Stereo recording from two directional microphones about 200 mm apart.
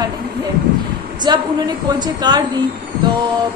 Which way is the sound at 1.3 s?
20° right (ahead or behind).